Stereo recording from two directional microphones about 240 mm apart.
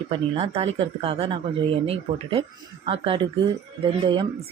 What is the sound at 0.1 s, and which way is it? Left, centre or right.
Speech, right.